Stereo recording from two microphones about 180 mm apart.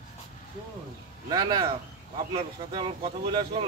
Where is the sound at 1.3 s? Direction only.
20° right (ahead or behind).